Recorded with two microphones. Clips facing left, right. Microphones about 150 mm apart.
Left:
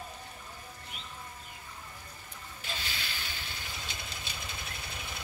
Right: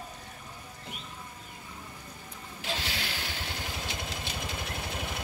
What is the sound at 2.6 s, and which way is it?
Vehicle, 75° right (ahead or behind).